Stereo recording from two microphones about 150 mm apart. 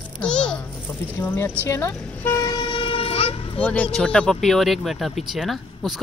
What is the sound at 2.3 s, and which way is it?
Vehicle, 30° left (ahead or behind).